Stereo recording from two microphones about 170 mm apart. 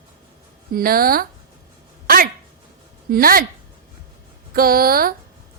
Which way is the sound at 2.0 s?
60° right (ahead or behind).